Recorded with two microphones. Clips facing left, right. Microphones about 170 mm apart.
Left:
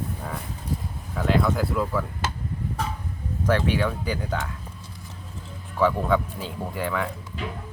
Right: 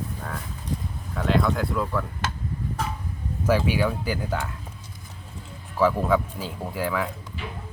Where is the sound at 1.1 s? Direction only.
Centre (ahead or behind).